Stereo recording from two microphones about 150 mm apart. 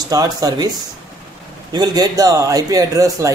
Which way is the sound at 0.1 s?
25° right (ahead or behind).